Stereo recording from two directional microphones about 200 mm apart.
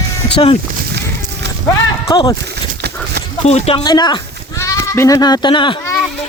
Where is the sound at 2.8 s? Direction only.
55° right (ahead or behind).